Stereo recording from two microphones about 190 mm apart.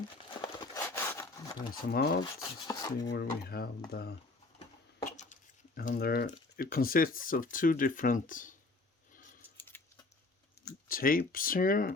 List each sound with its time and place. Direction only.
0.3 s crumpling: 20° left (ahead or behind)
1.9 s speech: 55° left (ahead or behind)
2.4 s speech: 20° left (ahead or behind)
3.1 s speech: 55° left (ahead or behind)
5.7 s speech: 50° left (ahead or behind)
9.6 s a sound: 10° left (ahead or behind)
10.8 s speech: 50° left (ahead or behind)